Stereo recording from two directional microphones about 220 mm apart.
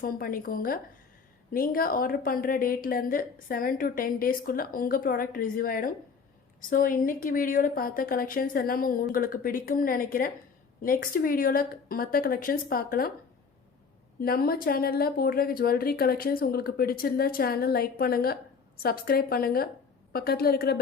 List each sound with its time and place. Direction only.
0.0 s a woman's voice: 40° left (ahead or behind)
14.2 s speech: 45° left (ahead or behind)